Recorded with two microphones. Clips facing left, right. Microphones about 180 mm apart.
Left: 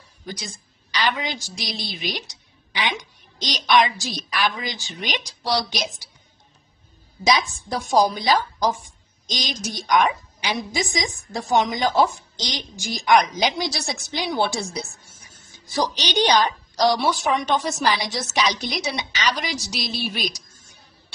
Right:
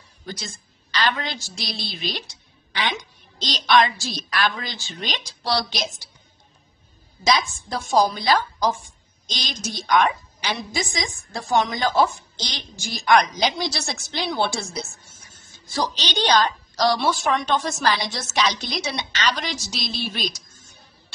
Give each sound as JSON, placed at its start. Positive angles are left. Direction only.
{"t": 0.9, "sound": "a woman's voice", "side_deg": 15}
{"t": 7.2, "sound": "a woman's voice", "side_deg": 15}